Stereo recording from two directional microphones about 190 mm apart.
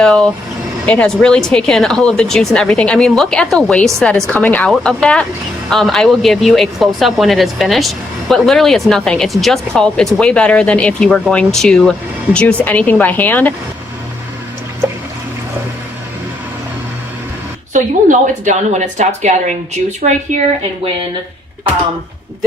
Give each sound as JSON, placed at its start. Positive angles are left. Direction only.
{"t": 0.0, "sound": "speech", "side_deg": 0}
{"t": 18.4, "sound": "speech", "side_deg": -40}